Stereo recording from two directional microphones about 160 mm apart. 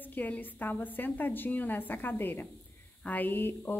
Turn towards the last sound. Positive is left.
turn(degrees=15)  # may be behind; listen again after turning